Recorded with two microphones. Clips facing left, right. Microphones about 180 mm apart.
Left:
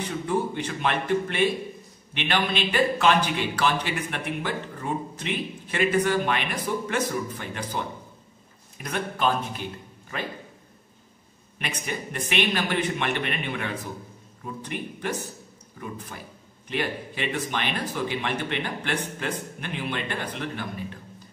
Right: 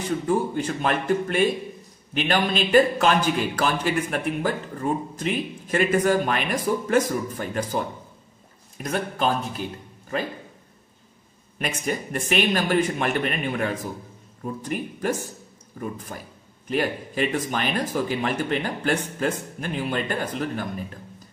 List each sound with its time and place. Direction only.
0.3 s a man's voice: 40° right (ahead or behind)
8.8 s a man's voice: 40° right (ahead or behind)
11.5 s a man's voice: 40° right (ahead or behind)